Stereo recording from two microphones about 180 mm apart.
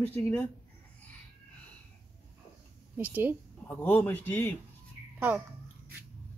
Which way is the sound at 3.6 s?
10° left (ahead or behind).